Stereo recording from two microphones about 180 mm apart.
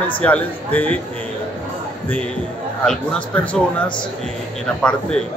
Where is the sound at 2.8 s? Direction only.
10° left (ahead or behind).